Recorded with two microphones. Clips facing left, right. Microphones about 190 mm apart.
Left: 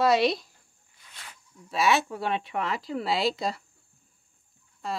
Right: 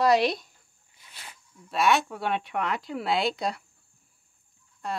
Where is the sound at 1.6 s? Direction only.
Centre (ahead or behind).